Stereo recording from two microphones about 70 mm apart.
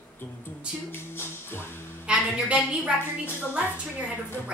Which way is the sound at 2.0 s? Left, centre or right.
Centre.